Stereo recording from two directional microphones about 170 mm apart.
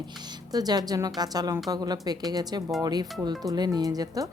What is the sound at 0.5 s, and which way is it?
Speech, 25° right (ahead or behind).